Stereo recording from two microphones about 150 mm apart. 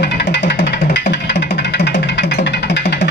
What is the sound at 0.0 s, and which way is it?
Music, 90° left.